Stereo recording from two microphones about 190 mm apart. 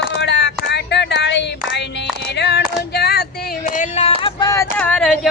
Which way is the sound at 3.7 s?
35° left (ahead or behind).